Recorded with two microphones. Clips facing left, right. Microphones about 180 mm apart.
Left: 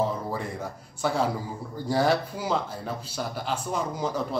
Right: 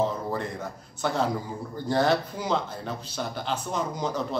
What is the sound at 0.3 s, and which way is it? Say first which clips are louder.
Speech: right 1 dB; 5° left (ahead or behind).